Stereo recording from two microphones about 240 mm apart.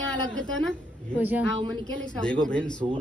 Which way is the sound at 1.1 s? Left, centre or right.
Centre.